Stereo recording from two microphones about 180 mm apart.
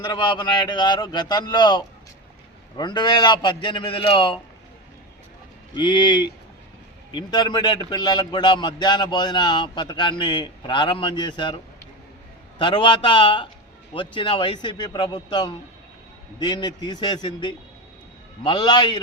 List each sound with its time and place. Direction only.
0.0 s a man's voice: 25° left (ahead or behind)
5.7 s a man's voice: 25° left (ahead or behind)